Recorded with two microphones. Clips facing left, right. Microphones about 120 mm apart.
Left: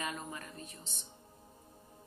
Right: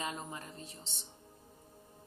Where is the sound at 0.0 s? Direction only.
25° right (ahead or behind).